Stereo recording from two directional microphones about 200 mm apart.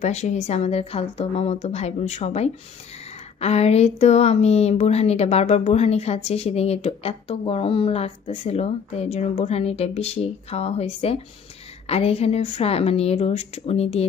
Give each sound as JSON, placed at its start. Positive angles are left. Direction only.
{"t": 0.0, "sound": "a woman's voice", "side_deg": 35}